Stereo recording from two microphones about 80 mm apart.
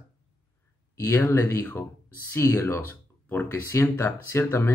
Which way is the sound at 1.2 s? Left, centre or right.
Left.